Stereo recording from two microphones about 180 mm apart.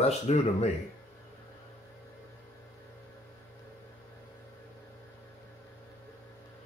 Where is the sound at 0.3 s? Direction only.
35° left (ahead or behind).